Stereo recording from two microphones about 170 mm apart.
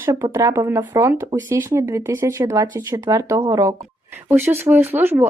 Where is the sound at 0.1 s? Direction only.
15° right (ahead or behind).